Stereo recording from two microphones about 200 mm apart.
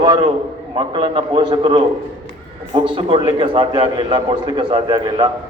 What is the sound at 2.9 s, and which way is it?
A man's voice, 25° right (ahead or behind).